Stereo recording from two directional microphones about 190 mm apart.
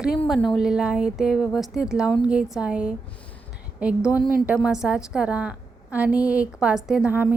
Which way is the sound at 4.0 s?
15° left (ahead or behind).